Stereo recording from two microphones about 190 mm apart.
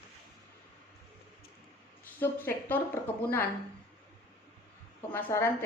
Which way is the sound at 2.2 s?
10° left (ahead or behind).